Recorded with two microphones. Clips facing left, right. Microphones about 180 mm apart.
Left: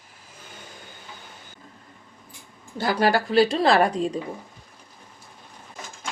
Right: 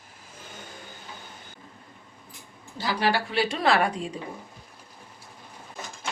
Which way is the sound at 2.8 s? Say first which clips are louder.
Left 4 dB; 45° left (ahead or behind).